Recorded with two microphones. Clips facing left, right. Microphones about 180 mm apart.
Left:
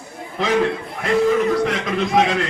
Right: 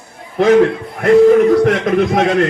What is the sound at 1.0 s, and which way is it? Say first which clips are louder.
Speech: right 9 dB; 55° right (ahead or behind).